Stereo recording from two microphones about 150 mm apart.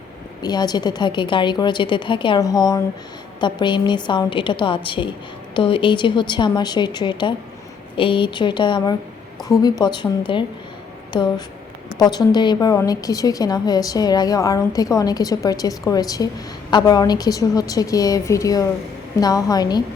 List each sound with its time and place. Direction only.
0.4 s a woman's voice: 25° left (ahead or behind)